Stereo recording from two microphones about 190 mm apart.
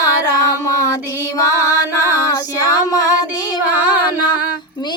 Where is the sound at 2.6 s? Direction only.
20° left (ahead or behind).